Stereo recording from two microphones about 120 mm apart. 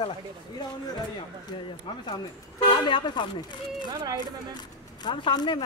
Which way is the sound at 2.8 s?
40° left (ahead or behind).